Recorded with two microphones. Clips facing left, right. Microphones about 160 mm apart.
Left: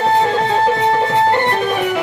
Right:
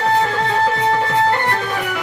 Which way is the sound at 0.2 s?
20° left (ahead or behind).